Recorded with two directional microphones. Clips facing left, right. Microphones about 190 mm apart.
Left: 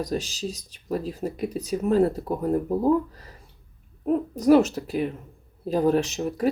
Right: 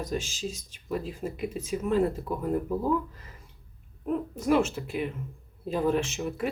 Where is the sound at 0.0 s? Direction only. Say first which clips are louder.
Left 4 dB; 35° left (ahead or behind).